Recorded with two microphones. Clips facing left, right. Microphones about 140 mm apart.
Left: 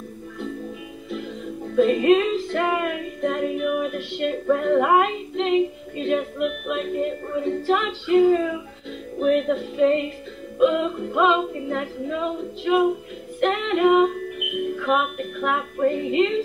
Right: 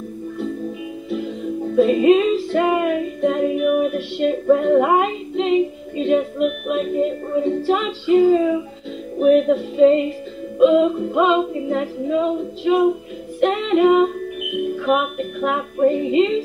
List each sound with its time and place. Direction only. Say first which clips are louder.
1.8 s a woman's voice: right 3 dB; 15° right (ahead or behind)